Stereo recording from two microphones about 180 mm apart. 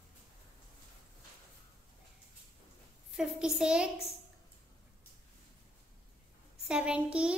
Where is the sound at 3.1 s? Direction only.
5° right (ahead or behind).